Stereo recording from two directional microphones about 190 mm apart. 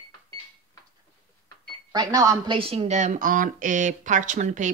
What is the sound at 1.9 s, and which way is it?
A woman's voice, 20° right (ahead or behind).